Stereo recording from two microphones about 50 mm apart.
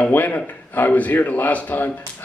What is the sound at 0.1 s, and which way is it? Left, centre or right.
A man's voice, left.